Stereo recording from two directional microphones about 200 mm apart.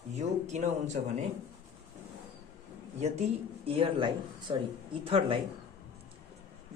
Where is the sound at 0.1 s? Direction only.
35° right (ahead or behind).